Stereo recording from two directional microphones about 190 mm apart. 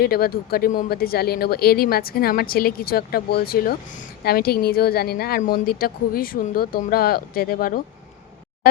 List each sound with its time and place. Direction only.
0.0 s speech: 55° left (ahead or behind)